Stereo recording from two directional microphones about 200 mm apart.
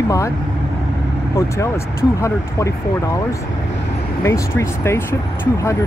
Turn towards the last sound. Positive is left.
turn(degrees=10)  # may be behind; listen again after turning